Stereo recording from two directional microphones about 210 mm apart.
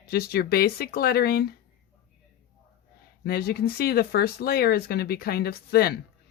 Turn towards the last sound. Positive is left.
turn(degrees=50)  # may be behind; listen again after turning